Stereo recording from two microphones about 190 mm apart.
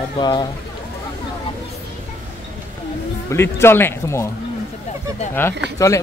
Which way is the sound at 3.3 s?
15° left (ahead or behind).